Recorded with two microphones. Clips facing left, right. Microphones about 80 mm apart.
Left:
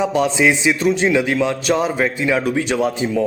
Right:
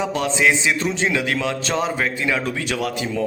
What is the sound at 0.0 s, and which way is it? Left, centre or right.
A man's voice, centre.